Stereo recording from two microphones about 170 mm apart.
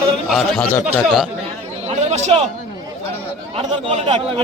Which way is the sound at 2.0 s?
40° right (ahead or behind).